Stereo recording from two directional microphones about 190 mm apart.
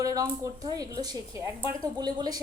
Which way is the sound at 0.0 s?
20° right (ahead or behind).